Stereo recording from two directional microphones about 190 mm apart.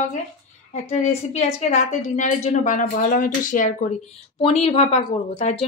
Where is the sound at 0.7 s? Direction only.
35° left (ahead or behind).